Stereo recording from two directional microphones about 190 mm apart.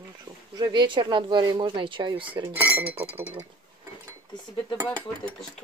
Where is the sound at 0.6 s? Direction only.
20° right (ahead or behind).